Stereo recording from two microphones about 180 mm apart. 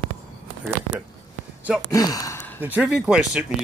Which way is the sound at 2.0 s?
20° left (ahead or behind).